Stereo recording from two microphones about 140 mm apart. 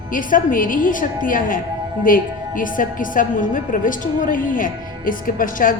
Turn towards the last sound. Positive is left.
turn(degrees=75)  # may be behind; listen again after turning